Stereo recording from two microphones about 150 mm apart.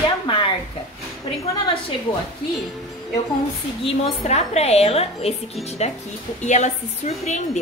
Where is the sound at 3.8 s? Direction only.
45° left (ahead or behind).